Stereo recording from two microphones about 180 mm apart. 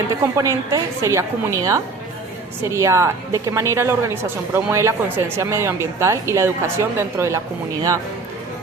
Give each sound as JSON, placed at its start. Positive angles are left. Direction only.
{"t": 0.3, "sound": "a woman's voice", "side_deg": -15}